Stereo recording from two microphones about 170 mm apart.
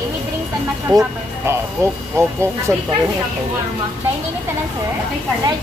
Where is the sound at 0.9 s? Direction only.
25° right (ahead or behind).